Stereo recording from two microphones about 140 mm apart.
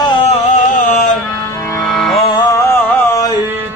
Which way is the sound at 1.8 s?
Centre (ahead or behind).